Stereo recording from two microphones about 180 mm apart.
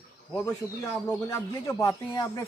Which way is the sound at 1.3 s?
15° left (ahead or behind).